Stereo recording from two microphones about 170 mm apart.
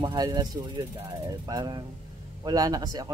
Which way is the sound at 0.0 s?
25° right (ahead or behind).